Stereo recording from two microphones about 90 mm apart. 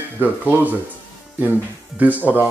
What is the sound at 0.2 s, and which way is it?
Speech, 20° right (ahead or behind).